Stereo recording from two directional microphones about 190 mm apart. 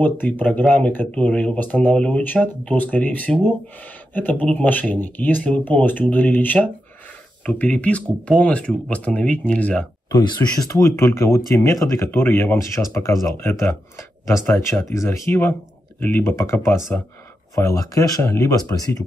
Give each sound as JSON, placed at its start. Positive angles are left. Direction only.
{"t": 0.0, "sound": "speech", "side_deg": 10}
{"t": 10.0, "sound": "speech", "side_deg": 20}